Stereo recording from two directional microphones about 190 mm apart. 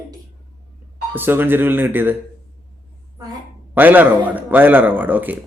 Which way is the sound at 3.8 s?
10° right (ahead or behind).